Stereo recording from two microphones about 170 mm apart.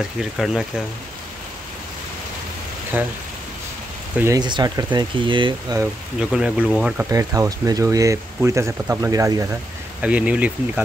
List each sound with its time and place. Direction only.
0.2 s speech: centre (ahead or behind)
4.2 s speech: 20° right (ahead or behind)
6.1 s speech: 5° right (ahead or behind)
7.1 s speech: 20° right (ahead or behind)
10.0 s speech: 10° right (ahead or behind)